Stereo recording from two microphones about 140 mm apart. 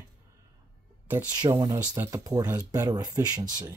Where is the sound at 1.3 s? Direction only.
25° right (ahead or behind).